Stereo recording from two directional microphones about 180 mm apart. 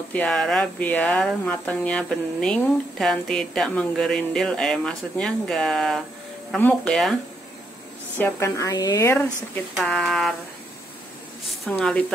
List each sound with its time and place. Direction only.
0.1 s speech: 5° left (ahead or behind)
8.2 s speech: 15° left (ahead or behind)
9.8 s speech: centre (ahead or behind)
11.4 s speech: centre (ahead or behind)